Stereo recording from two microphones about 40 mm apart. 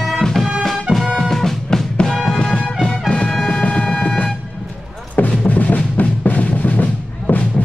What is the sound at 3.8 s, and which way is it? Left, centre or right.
Music, left.